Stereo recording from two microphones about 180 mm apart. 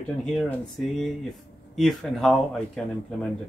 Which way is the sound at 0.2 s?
5° left (ahead or behind).